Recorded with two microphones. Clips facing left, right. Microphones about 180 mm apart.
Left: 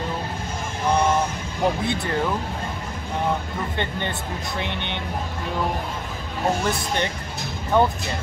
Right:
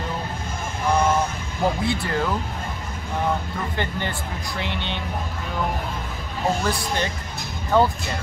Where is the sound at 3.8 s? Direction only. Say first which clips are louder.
Right 1 dB; 20° left (ahead or behind).